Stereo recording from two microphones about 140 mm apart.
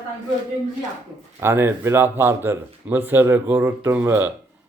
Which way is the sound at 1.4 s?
15° right (ahead or behind).